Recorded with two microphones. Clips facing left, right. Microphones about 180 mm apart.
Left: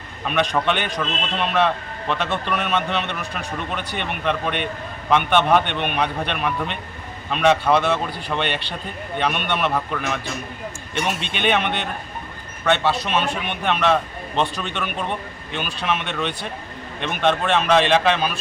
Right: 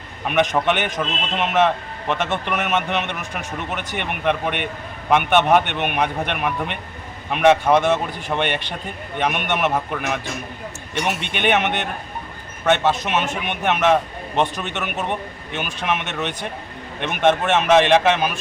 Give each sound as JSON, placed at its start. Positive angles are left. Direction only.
{"t": 0.3, "sound": "a man's voice", "side_deg": -15}
{"t": 11.3, "sound": "a man's voice", "side_deg": -15}